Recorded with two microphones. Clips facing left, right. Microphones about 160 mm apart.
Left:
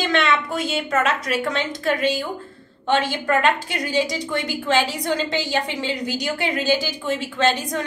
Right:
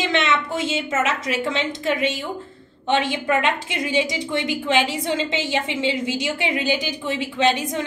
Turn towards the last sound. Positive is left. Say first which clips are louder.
# right 1 dB
turn(degrees=-20)  # may be behind; listen again after turning